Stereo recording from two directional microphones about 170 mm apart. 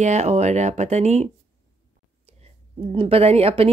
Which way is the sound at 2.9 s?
35° right (ahead or behind).